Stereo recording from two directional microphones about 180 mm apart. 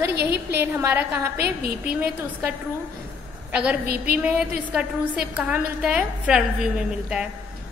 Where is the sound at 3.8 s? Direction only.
60° right (ahead or behind).